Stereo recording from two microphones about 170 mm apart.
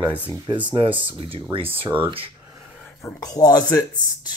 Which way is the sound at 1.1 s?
30° right (ahead or behind).